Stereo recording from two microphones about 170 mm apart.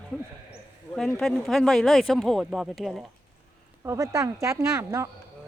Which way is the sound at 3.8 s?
20° right (ahead or behind).